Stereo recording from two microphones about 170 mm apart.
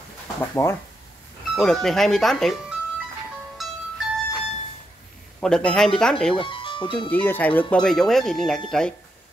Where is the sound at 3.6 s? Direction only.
Centre (ahead or behind).